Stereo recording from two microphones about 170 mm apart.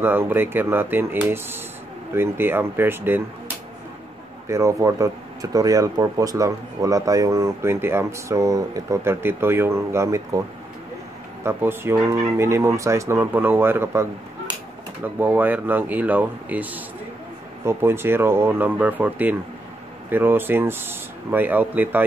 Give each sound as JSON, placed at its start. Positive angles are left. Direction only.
{"t": 0.0, "sound": "speech", "side_deg": -10}
{"t": 4.5, "sound": "speech", "side_deg": -15}
{"t": 11.4, "sound": "speech", "side_deg": -15}
{"t": 15.1, "sound": "speech", "side_deg": -10}